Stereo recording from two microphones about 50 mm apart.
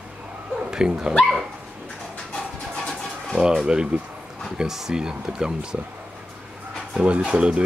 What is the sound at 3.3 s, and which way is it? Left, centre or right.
Speech, centre.